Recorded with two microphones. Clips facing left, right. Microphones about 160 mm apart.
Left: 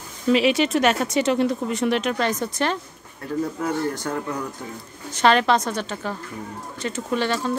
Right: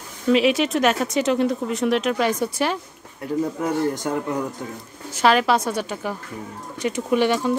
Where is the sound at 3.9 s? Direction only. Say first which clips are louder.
Right 3 dB; 15° right (ahead or behind).